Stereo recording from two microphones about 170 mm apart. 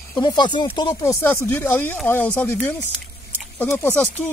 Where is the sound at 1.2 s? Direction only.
15° left (ahead or behind).